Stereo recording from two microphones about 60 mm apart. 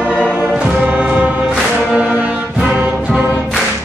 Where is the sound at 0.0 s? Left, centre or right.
Right.